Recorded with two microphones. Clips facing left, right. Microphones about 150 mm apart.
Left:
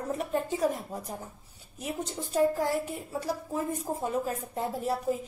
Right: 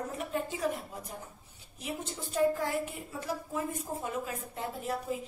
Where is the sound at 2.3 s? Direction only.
35° left (ahead or behind).